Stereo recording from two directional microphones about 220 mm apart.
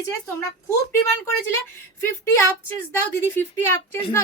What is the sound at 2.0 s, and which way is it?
A woman's voice, 10° left (ahead or behind).